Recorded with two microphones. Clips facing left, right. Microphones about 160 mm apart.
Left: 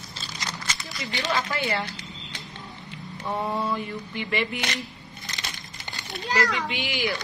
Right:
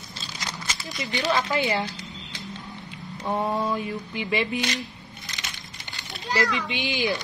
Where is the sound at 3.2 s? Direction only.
20° right (ahead or behind).